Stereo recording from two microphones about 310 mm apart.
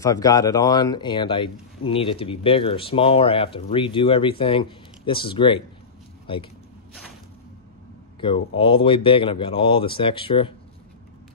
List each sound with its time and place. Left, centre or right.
0.0 s speech: centre
8.2 s speech: centre